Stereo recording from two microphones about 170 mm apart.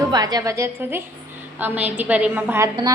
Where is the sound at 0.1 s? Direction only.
25° right (ahead or behind).